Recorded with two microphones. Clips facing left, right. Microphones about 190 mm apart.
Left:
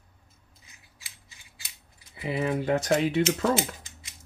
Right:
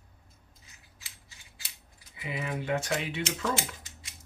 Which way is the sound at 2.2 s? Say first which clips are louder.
Left 7 dB; 35° left (ahead or behind).